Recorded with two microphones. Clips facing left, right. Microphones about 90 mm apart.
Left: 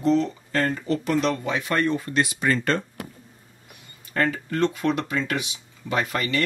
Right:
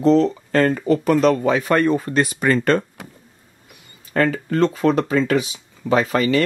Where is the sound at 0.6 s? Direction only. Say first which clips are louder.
Right 7 dB; 60° right (ahead or behind).